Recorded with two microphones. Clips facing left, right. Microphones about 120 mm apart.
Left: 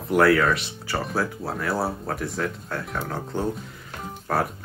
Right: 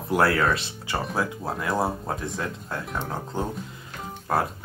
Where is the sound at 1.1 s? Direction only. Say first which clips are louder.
Left 1 dB; 15° right (ahead or behind).